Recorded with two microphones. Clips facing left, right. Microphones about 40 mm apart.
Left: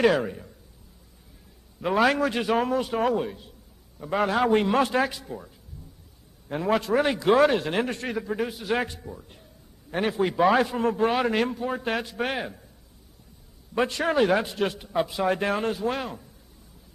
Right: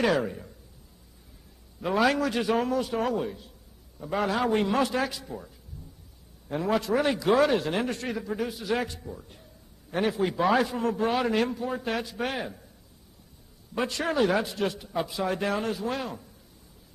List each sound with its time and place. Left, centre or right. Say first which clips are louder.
0.1 s a man's voice: left 1 dB; centre
1.8 s a man's voice: left 2 dB; left
5.2 s a man's voice: left 1 dB; centre
6.7 s a man's voice: left 2 dB; left
8.9 s speech: even; centre
9.3 s a sound: left 1 dB; centre
9.9 s a man's voice: left 2 dB; left
13.7 s a man's voice: left 3 dB; left